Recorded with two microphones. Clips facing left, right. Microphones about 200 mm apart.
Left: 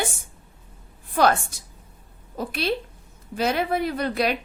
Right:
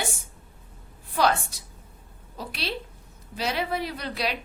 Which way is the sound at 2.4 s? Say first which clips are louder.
Left 7 dB; 50° left (ahead or behind).